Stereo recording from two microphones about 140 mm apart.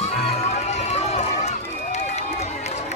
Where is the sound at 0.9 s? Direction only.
50° left (ahead or behind).